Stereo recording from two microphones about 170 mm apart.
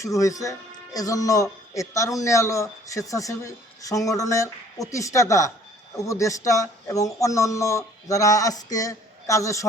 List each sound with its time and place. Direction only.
0.0 s a man's voice: 20° left (ahead or behind)